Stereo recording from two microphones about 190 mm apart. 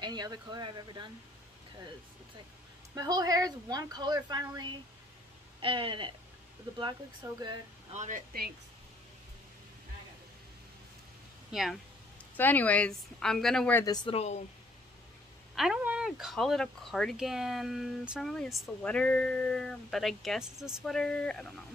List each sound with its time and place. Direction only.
0.0 s a woman's voice: 20° right (ahead or behind)
2.9 s a woman's voice: 20° right (ahead or behind)
7.9 s speech: 40° right (ahead or behind)
12.4 s a woman's voice: 10° left (ahead or behind); by 14.4 s 35° left (ahead or behind)
15.5 s speech: centre (ahead or behind)